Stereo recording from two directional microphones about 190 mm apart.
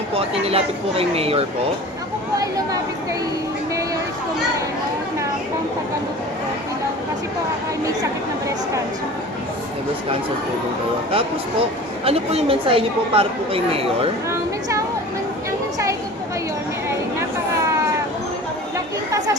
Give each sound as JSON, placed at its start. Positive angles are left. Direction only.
{"t": 0.1, "sound": "speech", "side_deg": -30}
{"t": 8.0, "sound": "a woman's voice", "side_deg": -15}
{"t": 12.0, "sound": "a woman's voice", "side_deg": -30}
{"t": 14.3, "sound": "a woman's voice", "side_deg": -15}